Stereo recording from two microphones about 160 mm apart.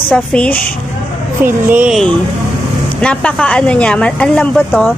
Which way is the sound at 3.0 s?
5° left (ahead or behind).